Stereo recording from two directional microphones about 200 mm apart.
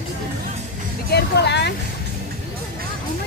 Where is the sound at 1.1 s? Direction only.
60° left (ahead or behind).